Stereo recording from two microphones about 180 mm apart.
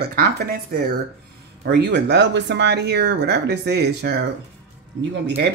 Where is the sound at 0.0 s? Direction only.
60° right (ahead or behind).